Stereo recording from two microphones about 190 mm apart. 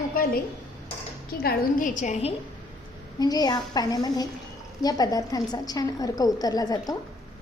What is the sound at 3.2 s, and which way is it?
A woman's voice, 20° left (ahead or behind).